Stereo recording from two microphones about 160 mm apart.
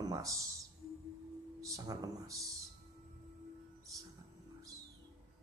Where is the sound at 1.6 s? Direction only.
20° right (ahead or behind).